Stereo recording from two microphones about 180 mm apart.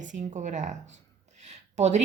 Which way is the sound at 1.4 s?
40° right (ahead or behind).